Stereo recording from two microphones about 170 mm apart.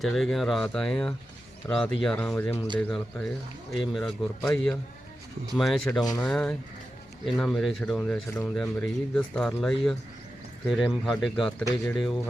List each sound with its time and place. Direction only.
0.0 s speech: centre (ahead or behind)
6.0 s speech: 20° left (ahead or behind)
6.2 s speech: 5° left (ahead or behind)